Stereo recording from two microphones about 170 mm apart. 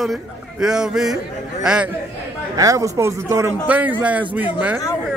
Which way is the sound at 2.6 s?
20° right (ahead or behind).